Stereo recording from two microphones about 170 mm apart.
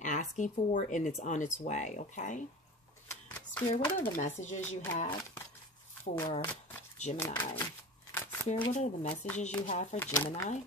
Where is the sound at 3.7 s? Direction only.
45° left (ahead or behind).